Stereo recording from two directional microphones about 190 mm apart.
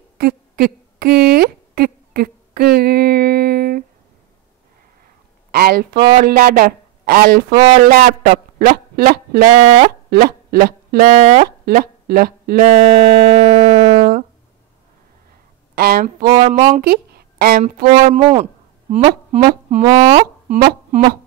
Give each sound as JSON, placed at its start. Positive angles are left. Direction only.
{"t": 0.2, "sound": "a sound", "side_deg": -55}
{"t": 5.5, "sound": "a sound", "side_deg": -50}
{"t": 6.1, "sound": "speech", "side_deg": -50}
{"t": 11.4, "sound": "speech", "side_deg": -55}
{"t": 12.6, "sound": "music", "side_deg": -35}
{"t": 15.7, "sound": "speech", "side_deg": -50}
{"t": 18.0, "sound": "speech", "side_deg": -35}
{"t": 19.8, "sound": "music", "side_deg": -20}
{"t": 20.2, "sound": "speech", "side_deg": -50}